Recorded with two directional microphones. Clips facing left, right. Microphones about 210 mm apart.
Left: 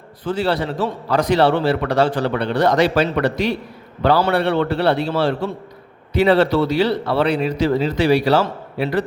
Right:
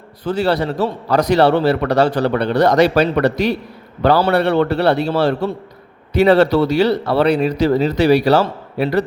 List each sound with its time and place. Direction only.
0.3 s a man's voice: 40° right (ahead or behind)